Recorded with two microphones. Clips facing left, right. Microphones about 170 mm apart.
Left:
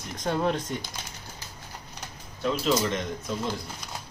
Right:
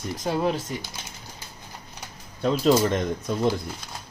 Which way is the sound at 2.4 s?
40° right (ahead or behind).